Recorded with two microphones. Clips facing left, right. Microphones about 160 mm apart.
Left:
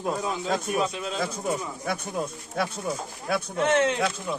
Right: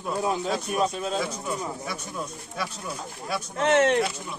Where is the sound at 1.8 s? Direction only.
55° left (ahead or behind).